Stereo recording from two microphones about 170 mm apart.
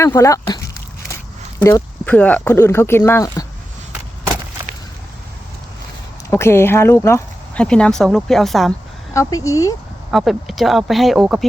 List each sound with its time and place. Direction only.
0.0 s a sound: 15° left (ahead or behind)
1.5 s speech: 25° left (ahead or behind)
2.0 s speech: 10° left (ahead or behind)
6.3 s speech: 15° left (ahead or behind)
9.1 s speech: 20° left (ahead or behind)
10.1 s speech: centre (ahead or behind)